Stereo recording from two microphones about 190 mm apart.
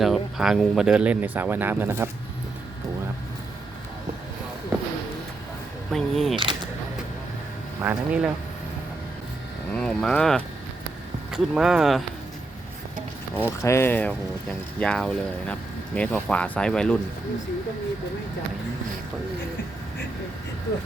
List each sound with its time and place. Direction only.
0.0 s speech: centre (ahead or behind)
5.9 s speech: centre (ahead or behind)
6.3 s a sound: 25° right (ahead or behind)
7.8 s speech: 5° right (ahead or behind)
9.7 s speech: 5° left (ahead or behind)
13.3 s speech: 15° left (ahead or behind)